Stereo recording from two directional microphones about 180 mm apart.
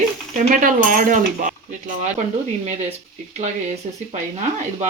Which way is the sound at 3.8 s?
40° right (ahead or behind).